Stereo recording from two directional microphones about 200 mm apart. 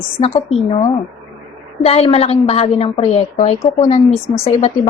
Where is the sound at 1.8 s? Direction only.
30° left (ahead or behind).